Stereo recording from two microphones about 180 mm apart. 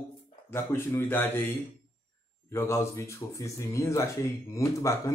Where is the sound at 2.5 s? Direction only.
15° left (ahead or behind).